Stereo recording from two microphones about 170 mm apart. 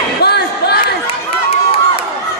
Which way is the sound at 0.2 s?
70° left (ahead or behind).